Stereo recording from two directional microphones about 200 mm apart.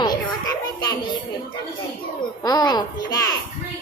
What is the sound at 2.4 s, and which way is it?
Speech, 20° left (ahead or behind).